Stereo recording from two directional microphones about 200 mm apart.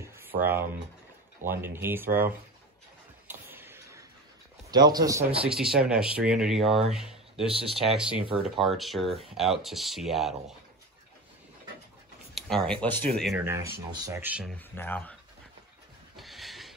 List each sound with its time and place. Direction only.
1.4 s speech: 10° right (ahead or behind)
2.0 s speech: 45° right (ahead or behind)
3.3 s tick-tock: 10° right (ahead or behind)
4.6 s speech: 20° right (ahead or behind)
5.4 s speech: 5° right (ahead or behind)
6.9 s a sound: centre (ahead or behind)
7.4 s speech: 30° right (ahead or behind)
7.9 s speech: 5° right (ahead or behind)
12.4 s speech: centre (ahead or behind)
13.4 s speech: 10° right (ahead or behind)
14.8 s speech: 10° left (ahead or behind)
16.2 s a sound: centre (ahead or behind)